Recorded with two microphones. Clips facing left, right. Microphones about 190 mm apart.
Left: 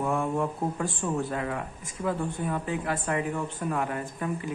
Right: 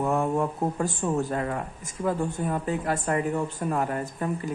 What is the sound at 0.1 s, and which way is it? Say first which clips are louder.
Speech: right 3 dB; 40° right (ahead or behind).